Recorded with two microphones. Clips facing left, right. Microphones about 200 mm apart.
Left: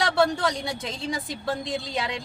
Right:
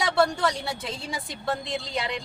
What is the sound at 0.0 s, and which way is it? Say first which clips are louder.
A woman's voice: left 1 dB; centre (ahead or behind).